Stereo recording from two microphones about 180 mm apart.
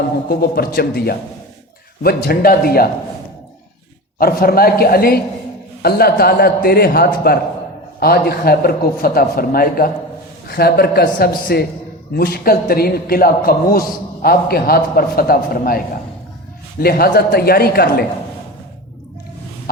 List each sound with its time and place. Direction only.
0.3 s a man's voice: 60° left (ahead or behind)
4.2 s a man's voice: 55° left (ahead or behind)
16.8 s a man's voice: 60° left (ahead or behind)